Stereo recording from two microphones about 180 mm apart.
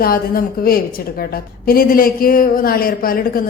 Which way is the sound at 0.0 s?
55° left (ahead or behind).